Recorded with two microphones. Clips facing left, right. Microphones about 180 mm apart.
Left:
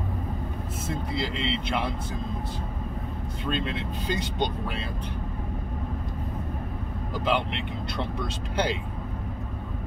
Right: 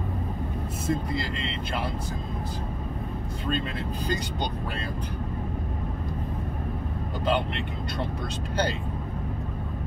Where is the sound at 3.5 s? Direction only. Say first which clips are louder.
Even; 45° right (ahead or behind).